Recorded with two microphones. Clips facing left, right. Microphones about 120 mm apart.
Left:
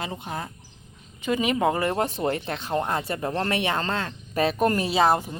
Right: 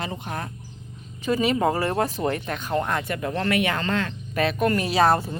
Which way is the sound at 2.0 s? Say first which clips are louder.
Right 1 dB; 30° left (ahead or behind).